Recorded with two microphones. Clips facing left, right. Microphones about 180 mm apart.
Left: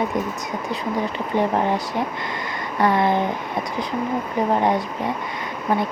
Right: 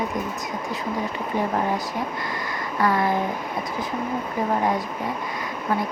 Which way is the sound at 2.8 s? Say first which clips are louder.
Left 3 dB; 25° left (ahead or behind).